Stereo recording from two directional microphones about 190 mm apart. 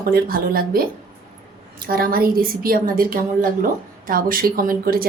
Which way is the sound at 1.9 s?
50° right (ahead or behind).